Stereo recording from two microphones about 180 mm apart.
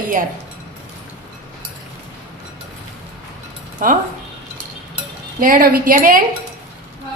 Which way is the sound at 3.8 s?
50° right (ahead or behind).